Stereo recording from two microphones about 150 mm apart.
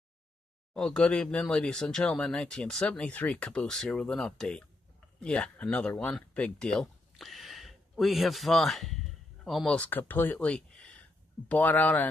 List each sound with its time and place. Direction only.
0.7 s speech: 5° left (ahead or behind)